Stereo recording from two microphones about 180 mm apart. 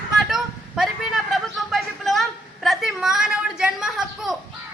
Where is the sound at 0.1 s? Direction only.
Centre (ahead or behind).